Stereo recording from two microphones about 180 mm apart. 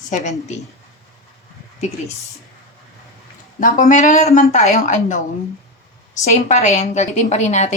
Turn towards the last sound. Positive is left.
turn(degrees=40)  # may be behind; listen again after turning